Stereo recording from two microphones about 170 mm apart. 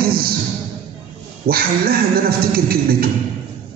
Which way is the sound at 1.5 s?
60° right (ahead or behind).